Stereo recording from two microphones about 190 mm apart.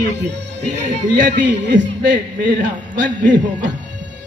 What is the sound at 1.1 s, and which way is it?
A man's voice, 65° right (ahead or behind).